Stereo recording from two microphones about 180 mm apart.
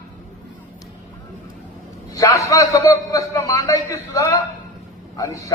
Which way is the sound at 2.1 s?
20° left (ahead or behind).